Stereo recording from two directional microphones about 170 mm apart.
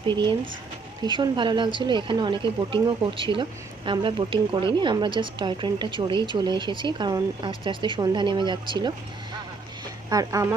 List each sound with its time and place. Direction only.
1.0 s speech: 25° right (ahead or behind)
10.1 s speech: 20° right (ahead or behind)